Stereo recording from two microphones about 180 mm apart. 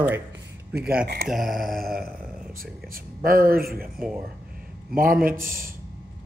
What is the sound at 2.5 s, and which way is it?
Speech, 55° right (ahead or behind).